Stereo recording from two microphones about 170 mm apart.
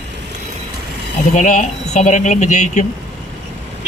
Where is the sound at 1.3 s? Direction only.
45° left (ahead or behind).